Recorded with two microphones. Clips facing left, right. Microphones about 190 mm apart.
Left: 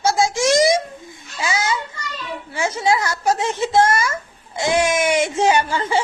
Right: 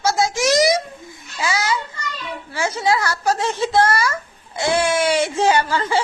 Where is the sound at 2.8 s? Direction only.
25° left (ahead or behind).